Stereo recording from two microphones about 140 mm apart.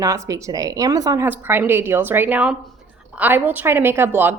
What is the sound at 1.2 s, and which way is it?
A woman's voice, 15° right (ahead or behind).